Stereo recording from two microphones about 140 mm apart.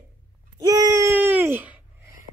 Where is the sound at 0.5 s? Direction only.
25° right (ahead or behind).